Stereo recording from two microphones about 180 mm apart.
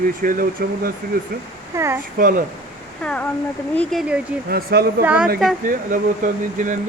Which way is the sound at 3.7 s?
5° left (ahead or behind).